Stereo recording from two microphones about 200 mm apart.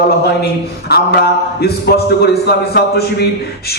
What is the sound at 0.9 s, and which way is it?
A man's voice, 55° left (ahead or behind).